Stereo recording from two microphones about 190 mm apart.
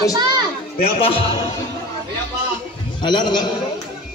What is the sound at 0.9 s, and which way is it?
Speech, 30° left (ahead or behind).